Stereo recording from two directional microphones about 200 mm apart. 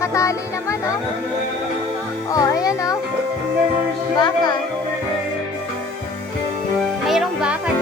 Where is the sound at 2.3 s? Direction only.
15° left (ahead or behind).